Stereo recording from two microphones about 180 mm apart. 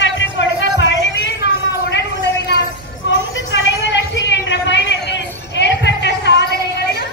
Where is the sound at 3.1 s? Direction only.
90° left; by 6.5 s 70° left (ahead or behind).